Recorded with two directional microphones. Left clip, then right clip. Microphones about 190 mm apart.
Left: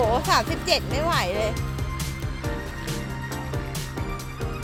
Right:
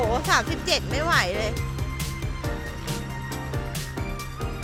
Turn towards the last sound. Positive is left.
turn(degrees=0)  # may be behind; listen again after turning